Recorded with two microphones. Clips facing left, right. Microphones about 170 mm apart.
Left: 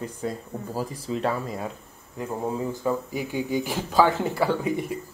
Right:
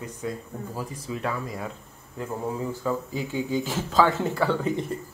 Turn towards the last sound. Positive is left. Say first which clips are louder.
# even
turn(degrees=10)  # may be behind; listen again after turning